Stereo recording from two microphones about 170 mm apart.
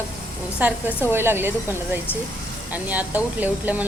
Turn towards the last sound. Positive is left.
turn(degrees=-10)  # may be behind; listen again after turning